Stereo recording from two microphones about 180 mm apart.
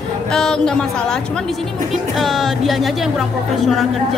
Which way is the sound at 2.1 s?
Centre (ahead or behind).